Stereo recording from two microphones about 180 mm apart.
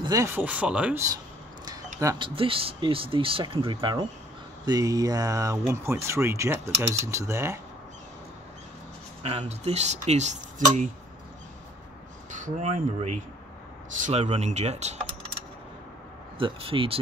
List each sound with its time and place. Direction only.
0.0 s speech: 20° right (ahead or behind)
2.0 s speech: 20° right (ahead or behind)
9.2 s speech: 35° right (ahead or behind)
12.3 s speech: 45° right (ahead or behind)
16.3 s speech: 30° right (ahead or behind)